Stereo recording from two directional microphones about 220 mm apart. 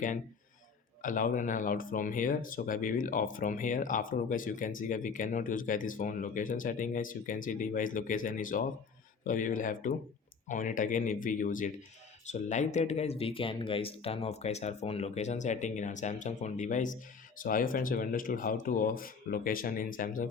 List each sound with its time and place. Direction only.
1.0 s speech: 35° left (ahead or behind)